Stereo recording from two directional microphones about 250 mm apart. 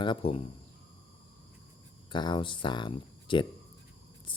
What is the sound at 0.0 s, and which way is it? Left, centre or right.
Speech, left.